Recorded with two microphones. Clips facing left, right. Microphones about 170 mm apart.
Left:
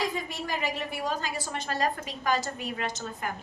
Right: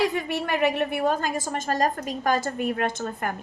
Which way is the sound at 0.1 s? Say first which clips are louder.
Right 6 dB; 65° right (ahead or behind).